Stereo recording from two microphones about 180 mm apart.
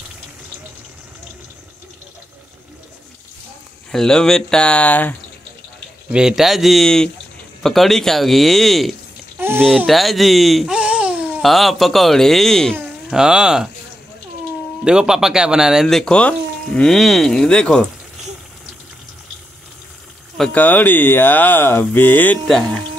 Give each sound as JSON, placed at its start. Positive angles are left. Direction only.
{"t": 3.9, "sound": "speech", "side_deg": 5}
{"t": 6.1, "sound": "speech", "side_deg": 0}
{"t": 9.4, "sound": "a sound", "side_deg": -10}
{"t": 9.8, "sound": "speech", "side_deg": 0}
{"t": 14.9, "sound": "speech", "side_deg": -5}
{"t": 20.3, "sound": "speech", "side_deg": 5}